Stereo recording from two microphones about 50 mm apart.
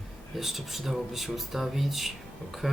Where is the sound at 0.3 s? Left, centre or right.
Centre.